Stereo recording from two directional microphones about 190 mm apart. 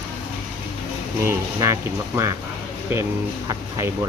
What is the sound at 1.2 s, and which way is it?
Speech, 15° right (ahead or behind).